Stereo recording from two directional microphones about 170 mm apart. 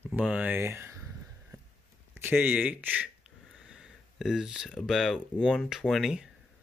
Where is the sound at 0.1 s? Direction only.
10° right (ahead or behind).